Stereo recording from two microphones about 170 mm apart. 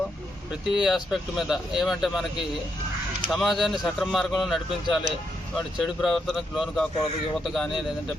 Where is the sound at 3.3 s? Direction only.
Centre (ahead or behind).